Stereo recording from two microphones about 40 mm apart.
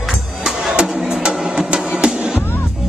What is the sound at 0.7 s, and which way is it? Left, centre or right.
Music, right.